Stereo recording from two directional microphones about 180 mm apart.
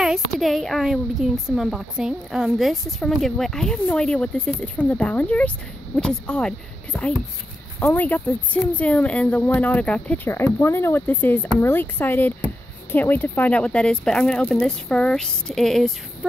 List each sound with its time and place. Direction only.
0.0 s a woman's voice: centre (ahead or behind)